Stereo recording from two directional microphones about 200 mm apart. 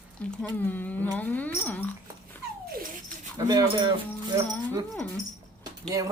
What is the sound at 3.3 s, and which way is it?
Speech, 20° right (ahead or behind).